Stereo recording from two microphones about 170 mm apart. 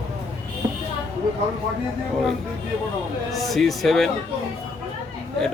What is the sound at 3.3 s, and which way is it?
Speech, centre (ahead or behind).